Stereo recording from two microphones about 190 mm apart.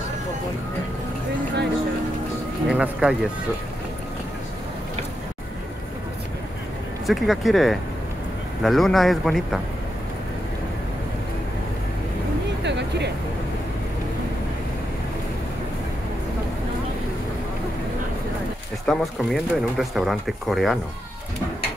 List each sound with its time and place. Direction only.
2.7 s speech: 5° right (ahead or behind)
7.1 s speech: centre (ahead or behind)
12.6 s a sound: 65° right (ahead or behind)
18.9 s speech: centre (ahead or behind)